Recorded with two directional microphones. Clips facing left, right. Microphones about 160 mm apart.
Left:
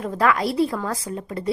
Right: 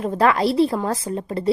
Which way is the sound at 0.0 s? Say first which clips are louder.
Right 3 dB; 30° right (ahead or behind).